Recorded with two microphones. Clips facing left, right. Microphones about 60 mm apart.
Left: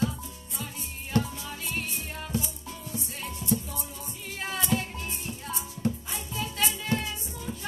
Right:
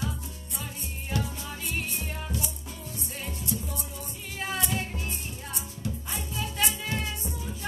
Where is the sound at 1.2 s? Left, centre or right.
Centre.